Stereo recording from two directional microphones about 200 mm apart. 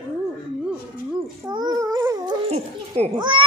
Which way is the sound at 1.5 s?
20° right (ahead or behind).